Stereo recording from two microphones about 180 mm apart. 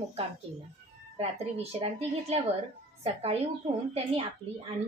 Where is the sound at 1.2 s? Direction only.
35° right (ahead or behind).